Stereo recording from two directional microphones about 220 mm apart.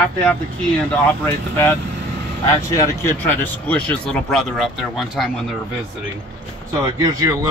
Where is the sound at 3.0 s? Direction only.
10° left (ahead or behind).